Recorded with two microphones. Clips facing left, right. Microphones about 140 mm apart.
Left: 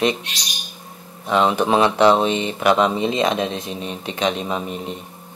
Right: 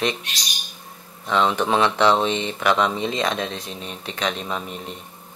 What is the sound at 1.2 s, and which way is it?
Speech, 15° left (ahead or behind).